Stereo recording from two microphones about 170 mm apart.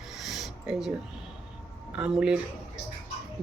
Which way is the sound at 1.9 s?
5° right (ahead or behind).